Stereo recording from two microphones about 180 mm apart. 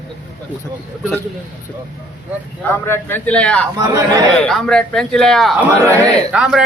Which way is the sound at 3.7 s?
20° right (ahead or behind).